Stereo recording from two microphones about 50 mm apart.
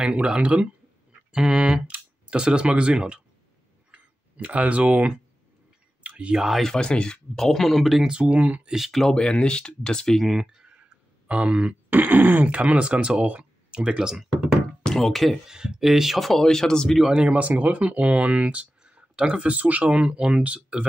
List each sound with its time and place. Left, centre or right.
0.0 s speech: right
6.0 s clicking: right
6.3 s speech: centre
6.6 s speech: centre
7.3 s speech: centre
8.0 s speech: right
8.6 s speech: centre
9.1 s speech: centre
10.2 s speech: centre
11.9 s throat clearing: right
12.4 s speech: right
14.9 s speech: centre
15.3 s speech: centre
17.1 s speech: right